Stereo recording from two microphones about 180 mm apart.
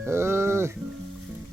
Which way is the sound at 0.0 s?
15° right (ahead or behind).